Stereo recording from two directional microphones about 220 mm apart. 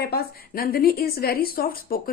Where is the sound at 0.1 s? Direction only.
40° left (ahead or behind).